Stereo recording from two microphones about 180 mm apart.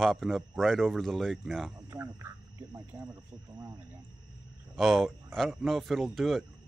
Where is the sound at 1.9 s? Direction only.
15° right (ahead or behind).